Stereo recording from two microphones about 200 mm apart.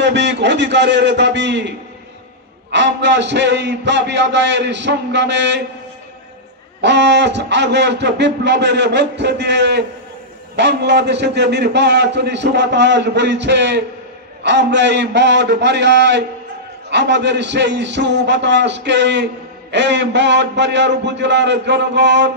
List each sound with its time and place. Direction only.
0.0 s a man's voice: 60° right (ahead or behind)
2.7 s a man's voice: 60° right (ahead or behind)
6.8 s a man's voice: 60° right (ahead or behind)